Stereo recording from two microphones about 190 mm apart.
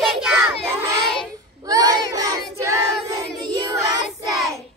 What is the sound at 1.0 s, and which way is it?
Child singing, centre (ahead or behind).